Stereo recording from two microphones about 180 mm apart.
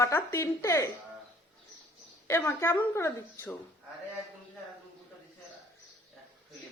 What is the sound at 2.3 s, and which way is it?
Speech, 15° left (ahead or behind).